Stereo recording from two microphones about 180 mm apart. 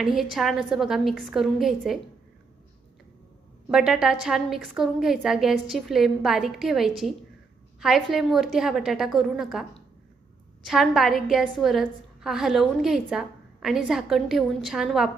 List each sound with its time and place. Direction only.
0.0 s a woman's voice: centre (ahead or behind)
3.7 s a woman's voice: 5° right (ahead or behind)